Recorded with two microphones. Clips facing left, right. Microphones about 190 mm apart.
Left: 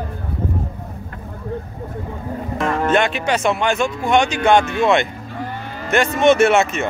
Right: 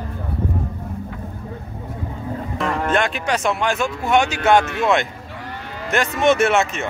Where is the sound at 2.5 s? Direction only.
Centre (ahead or behind).